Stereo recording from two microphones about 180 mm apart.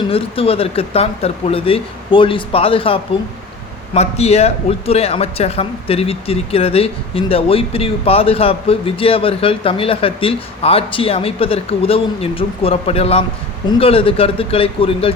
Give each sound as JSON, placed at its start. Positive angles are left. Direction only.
{"t": 0.1, "sound": "a man's voice", "side_deg": 30}